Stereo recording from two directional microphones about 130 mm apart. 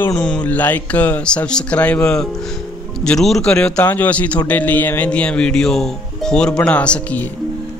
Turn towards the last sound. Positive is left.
turn(degrees=10)  # may be behind; listen again after turning